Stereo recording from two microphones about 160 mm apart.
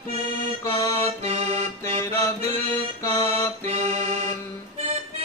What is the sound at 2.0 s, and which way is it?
Music, 15° left (ahead or behind).